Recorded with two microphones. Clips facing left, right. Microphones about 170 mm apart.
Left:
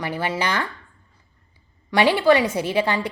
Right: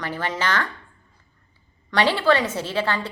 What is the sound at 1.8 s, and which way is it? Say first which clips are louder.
Speech: left 3 dB; 15° left (ahead or behind).